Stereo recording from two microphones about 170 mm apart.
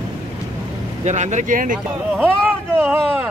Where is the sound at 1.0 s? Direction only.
45° right (ahead or behind).